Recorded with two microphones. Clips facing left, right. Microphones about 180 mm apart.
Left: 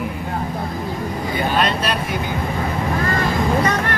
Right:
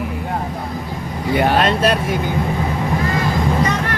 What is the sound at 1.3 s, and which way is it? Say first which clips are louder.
Speech: right 7 dB; 75° right (ahead or behind).